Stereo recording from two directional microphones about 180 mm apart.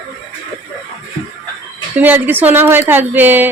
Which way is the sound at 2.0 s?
10° right (ahead or behind).